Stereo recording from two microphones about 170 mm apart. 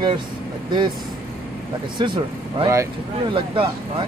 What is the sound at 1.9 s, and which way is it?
Speech, 25° right (ahead or behind).